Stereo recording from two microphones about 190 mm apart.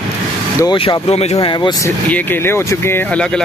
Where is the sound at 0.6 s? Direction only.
25° left (ahead or behind).